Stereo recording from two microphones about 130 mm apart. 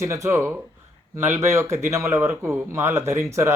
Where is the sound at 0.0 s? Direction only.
20° right (ahead or behind).